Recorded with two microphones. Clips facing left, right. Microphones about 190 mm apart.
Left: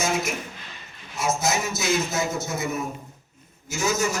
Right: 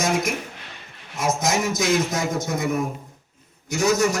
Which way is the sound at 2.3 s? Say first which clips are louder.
Right 4 dB; 50° right (ahead or behind).